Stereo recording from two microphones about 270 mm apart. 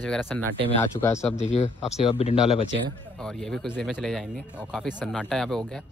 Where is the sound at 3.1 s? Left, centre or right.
Centre.